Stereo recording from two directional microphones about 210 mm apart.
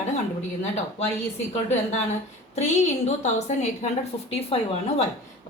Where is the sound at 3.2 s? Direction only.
30° left (ahead or behind).